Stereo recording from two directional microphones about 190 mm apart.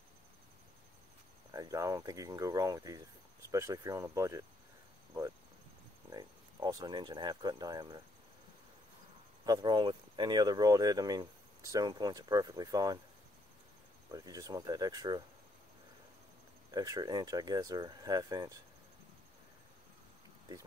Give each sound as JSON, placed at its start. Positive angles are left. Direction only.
{"t": 1.5, "sound": "speech", "side_deg": -20}
{"t": 6.1, "sound": "speech", "side_deg": -20}
{"t": 9.5, "sound": "speech", "side_deg": -20}
{"t": 14.1, "sound": "speech", "side_deg": -20}
{"t": 16.7, "sound": "speech", "side_deg": -20}